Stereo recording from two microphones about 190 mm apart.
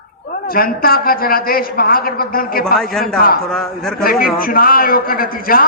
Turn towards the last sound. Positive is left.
turn(degrees=50)  # may be behind; listen again after turning